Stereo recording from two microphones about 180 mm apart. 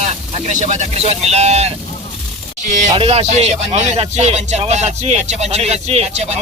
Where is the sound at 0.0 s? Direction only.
40° right (ahead or behind).